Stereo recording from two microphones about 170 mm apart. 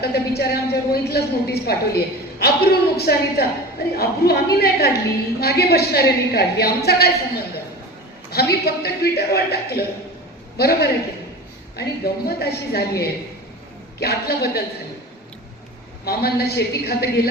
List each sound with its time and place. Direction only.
0.0 s a woman's voice: 70° left (ahead or behind)
14.0 s a woman's voice: 70° left (ahead or behind)
16.0 s a woman's voice: 70° left (ahead or behind)